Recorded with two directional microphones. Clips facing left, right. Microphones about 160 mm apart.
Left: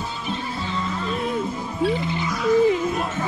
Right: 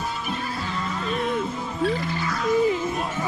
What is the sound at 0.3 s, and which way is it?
Music, 25° left (ahead or behind).